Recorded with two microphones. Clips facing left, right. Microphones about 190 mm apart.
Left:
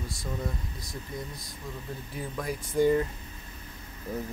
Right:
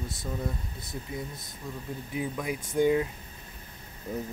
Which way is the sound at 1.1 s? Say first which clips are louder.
Right 1 dB; 5° right (ahead or behind).